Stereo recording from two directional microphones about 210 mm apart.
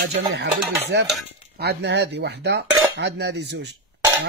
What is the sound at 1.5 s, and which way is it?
Cutlery, 50° right (ahead or behind).